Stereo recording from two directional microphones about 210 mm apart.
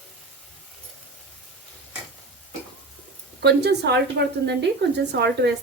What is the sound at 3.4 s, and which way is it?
A woman's voice, 50° right (ahead or behind).